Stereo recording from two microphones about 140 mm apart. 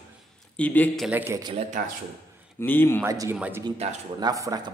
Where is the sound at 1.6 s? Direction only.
60° right (ahead or behind).